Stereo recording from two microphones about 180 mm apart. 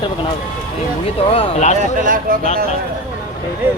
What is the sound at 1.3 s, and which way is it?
Speech, 35° left (ahead or behind).